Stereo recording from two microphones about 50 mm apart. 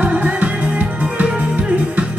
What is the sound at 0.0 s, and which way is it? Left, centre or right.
Music, right.